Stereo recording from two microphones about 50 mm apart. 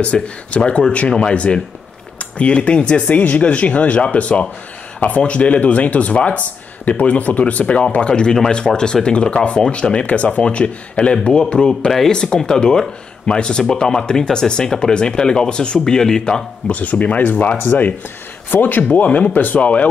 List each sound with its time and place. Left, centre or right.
0.0 s speech: left
16.6 s speech: left